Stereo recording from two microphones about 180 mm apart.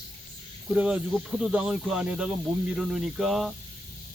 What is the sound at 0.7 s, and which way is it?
Speech, 5° right (ahead or behind).